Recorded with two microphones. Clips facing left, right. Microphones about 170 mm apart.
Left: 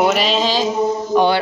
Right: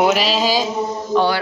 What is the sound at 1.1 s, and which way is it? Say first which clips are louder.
Speech: left 1 dB; 15° left (ahead or behind).